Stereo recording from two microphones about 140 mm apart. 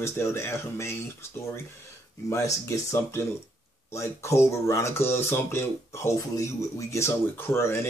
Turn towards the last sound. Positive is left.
turn(degrees=20)  # may be behind; listen again after turning